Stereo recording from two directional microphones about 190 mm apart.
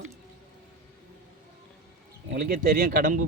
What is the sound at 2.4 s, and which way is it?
Speech, 45° right (ahead or behind).